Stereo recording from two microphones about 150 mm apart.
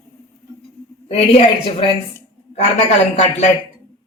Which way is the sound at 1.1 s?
40° left (ahead or behind).